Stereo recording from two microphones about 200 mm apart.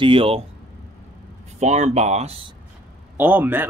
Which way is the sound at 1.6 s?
35° right (ahead or behind).